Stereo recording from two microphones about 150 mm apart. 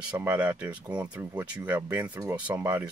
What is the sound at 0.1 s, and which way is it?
Speech, 10° right (ahead or behind).